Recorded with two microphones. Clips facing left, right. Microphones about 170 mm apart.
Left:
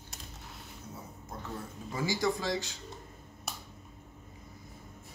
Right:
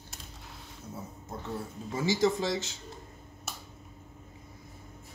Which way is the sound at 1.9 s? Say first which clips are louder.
Right 4 dB; 25° right (ahead or behind).